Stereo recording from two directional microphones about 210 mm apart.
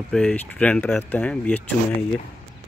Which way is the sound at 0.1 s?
5° left (ahead or behind).